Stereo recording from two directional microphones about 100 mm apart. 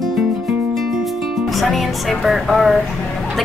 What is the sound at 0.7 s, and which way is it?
Music, centre (ahead or behind).